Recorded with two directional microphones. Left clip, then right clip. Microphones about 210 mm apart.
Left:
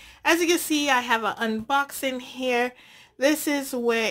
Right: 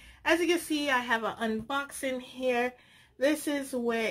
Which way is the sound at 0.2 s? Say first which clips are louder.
Left 5 dB; 45° left (ahead or behind).